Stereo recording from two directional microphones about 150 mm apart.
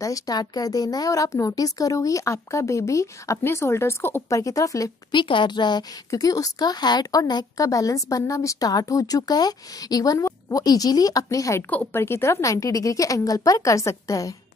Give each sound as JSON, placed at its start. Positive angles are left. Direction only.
{"t": 0.0, "sound": "a woman's voice", "side_deg": 25}